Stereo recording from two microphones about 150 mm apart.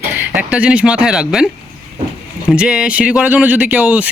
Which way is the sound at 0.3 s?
10° right (ahead or behind).